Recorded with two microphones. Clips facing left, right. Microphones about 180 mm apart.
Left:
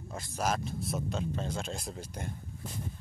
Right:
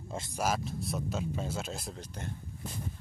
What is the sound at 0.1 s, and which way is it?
Speech, 20° right (ahead or behind).